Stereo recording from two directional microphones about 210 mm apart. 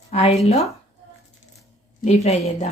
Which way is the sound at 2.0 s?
35° left (ahead or behind).